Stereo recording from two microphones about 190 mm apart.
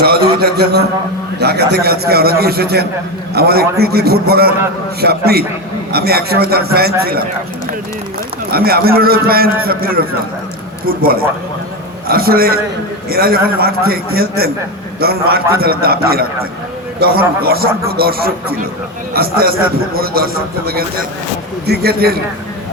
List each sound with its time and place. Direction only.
0.0 s a man's voice: 55° right (ahead or behind)
8.5 s a man's voice: 55° right (ahead or behind)